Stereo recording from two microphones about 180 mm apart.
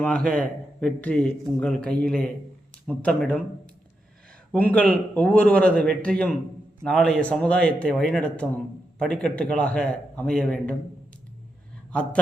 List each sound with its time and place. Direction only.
0.0 s a man's voice: 5° left (ahead or behind)
4.5 s a man's voice: 10° left (ahead or behind)
11.9 s speech: 5° left (ahead or behind)